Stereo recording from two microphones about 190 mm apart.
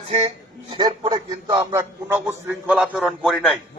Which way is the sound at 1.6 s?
10° right (ahead or behind).